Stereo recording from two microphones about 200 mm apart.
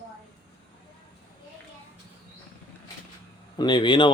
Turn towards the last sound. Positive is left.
turn(degrees=25)  # may be behind; listen again after turning